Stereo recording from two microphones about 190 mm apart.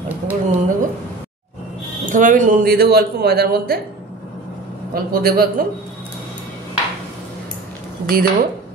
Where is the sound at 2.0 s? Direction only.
45° right (ahead or behind).